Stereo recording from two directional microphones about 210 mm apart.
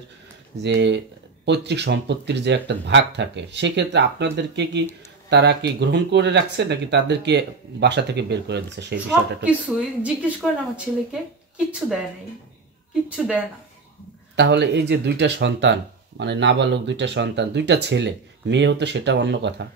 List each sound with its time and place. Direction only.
0.6 s speech: 55° right (ahead or behind)
8.9 s speech: 5° right (ahead or behind)
14.3 s speech: 55° right (ahead or behind)